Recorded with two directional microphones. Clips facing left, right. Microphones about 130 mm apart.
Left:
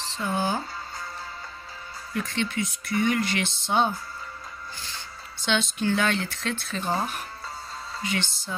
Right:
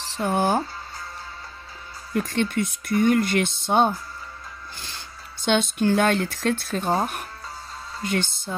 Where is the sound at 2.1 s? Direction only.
50° right (ahead or behind).